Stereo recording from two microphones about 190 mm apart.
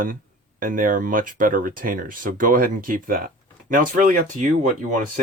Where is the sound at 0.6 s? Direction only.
45° right (ahead or behind).